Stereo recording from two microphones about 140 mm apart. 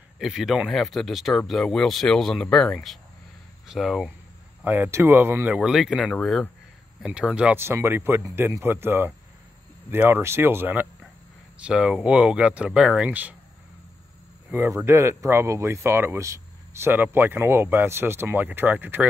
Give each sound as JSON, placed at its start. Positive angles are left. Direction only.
{"t": 0.2, "sound": "speech", "side_deg": 0}
{"t": 4.6, "sound": "speech", "side_deg": -15}
{"t": 7.0, "sound": "speech", "side_deg": -5}
{"t": 14.5, "sound": "speech", "side_deg": -15}